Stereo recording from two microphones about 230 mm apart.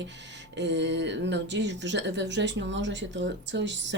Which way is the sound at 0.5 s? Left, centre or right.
Right.